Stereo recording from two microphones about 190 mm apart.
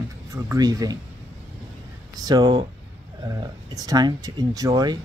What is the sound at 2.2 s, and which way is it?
Speech, 20° right (ahead or behind).